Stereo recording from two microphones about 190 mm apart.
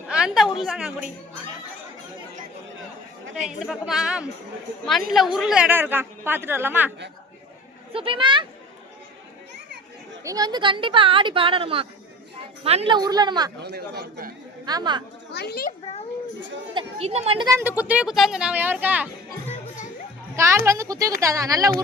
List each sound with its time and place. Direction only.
0.1 s a woman's voice: 5° right (ahead or behind)
3.4 s a woman's voice: centre (ahead or behind)
7.9 s speech: 25° right (ahead or behind)
10.2 s speech: 20° right (ahead or behind)
13.6 s a man's voice: 60° right (ahead or behind)
14.6 s speech: 20° right (ahead or behind)
15.3 s a child's voice: 60° left (ahead or behind)
16.7 s speech: 30° right (ahead or behind)
17.6 s a woman's voice: 10° right (ahead or behind)
19.5 s music: 40° left (ahead or behind)
20.3 s a child's voice: 15° right (ahead or behind)